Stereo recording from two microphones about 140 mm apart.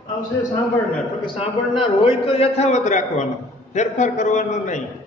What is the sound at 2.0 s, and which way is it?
A man's voice, 40° left (ahead or behind).